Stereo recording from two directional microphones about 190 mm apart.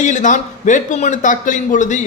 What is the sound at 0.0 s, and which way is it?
Speech, 40° left (ahead or behind).